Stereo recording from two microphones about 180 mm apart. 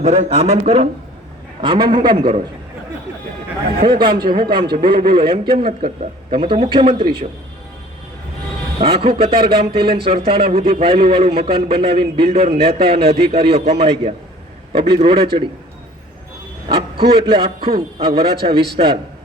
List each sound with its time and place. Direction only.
0.0 s a man's voice: 35° right (ahead or behind)
3.8 s a man's voice: 25° right (ahead or behind)
8.8 s a man's voice: 30° right (ahead or behind)
16.6 s a man's voice: 25° right (ahead or behind)